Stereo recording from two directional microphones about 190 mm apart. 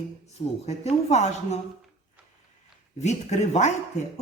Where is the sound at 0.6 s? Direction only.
35° left (ahead or behind).